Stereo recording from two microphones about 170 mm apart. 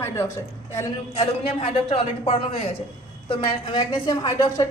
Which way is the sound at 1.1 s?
30° left (ahead or behind).